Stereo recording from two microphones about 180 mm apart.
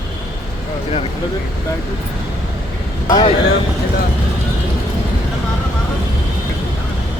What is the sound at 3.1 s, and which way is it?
Speech, 25° left (ahead or behind).